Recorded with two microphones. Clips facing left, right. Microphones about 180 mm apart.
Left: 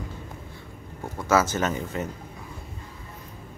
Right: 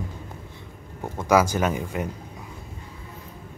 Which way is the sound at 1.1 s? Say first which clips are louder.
Right 3 dB; 15° right (ahead or behind).